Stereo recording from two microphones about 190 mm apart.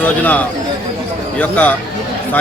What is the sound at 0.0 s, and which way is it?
A man's voice, 10° left (ahead or behind).